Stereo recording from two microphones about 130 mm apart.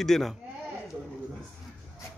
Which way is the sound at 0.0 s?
Centre (ahead or behind).